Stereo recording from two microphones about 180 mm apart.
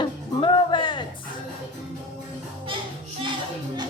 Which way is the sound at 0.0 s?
25° left (ahead or behind).